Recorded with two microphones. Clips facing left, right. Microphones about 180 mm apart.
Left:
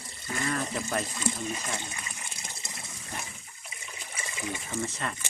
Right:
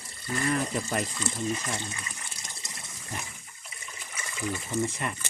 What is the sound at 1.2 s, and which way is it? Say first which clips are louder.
Water: right 1 dB; 15° left (ahead or behind).